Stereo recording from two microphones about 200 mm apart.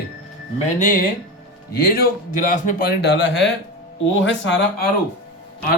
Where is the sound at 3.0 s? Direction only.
60° left (ahead or behind).